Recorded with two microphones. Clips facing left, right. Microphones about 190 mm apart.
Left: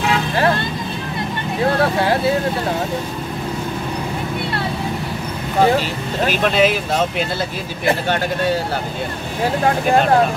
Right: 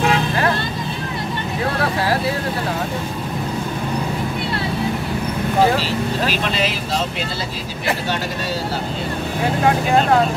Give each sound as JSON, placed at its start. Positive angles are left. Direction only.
{"t": 5.8, "sound": "speech", "side_deg": 50}
{"t": 7.8, "sound": "speech", "side_deg": 55}